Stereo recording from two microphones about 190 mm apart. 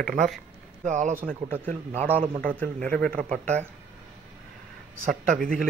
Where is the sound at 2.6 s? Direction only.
5° left (ahead or behind).